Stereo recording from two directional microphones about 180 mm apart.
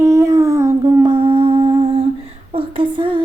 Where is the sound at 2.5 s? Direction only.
30° right (ahead or behind).